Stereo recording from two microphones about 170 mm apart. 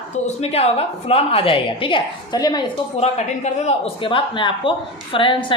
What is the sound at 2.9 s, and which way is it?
A man's voice, 40° left (ahead or behind).